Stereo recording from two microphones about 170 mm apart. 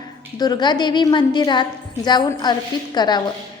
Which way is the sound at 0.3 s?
25° left (ahead or behind).